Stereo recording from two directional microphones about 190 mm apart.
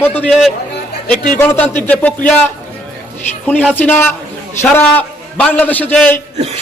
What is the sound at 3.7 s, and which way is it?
A man's voice, 10° left (ahead or behind).